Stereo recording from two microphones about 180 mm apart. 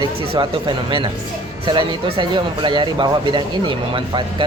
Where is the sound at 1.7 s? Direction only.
30° right (ahead or behind).